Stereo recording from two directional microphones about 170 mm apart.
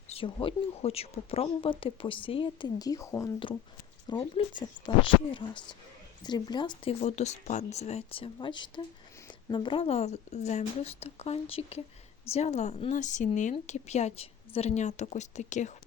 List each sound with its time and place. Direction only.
0.1 s speech: 30° left (ahead or behind)
4.0 s speech: 30° left (ahead or behind)
7.0 s a woman's voice: 40° left (ahead or behind)